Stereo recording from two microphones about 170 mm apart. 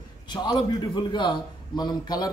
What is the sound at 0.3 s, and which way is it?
A man's voice, 25° left (ahead or behind).